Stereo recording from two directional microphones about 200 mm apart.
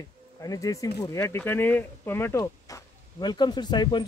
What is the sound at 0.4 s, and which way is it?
Speech, 15° left (ahead or behind).